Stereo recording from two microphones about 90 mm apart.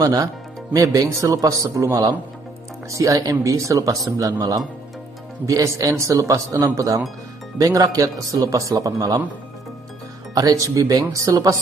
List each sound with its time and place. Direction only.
0.0 s speech: 45° right (ahead or behind)
10.3 s speech: 40° right (ahead or behind)